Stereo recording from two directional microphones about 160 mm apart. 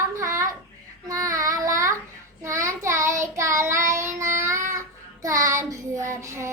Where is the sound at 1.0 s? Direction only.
20° right (ahead or behind).